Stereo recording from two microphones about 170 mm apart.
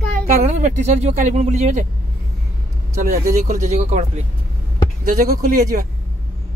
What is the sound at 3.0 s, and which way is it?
Speech, 50° right (ahead or behind).